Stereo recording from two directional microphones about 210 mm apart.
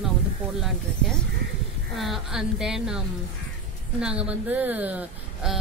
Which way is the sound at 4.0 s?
5° right (ahead or behind).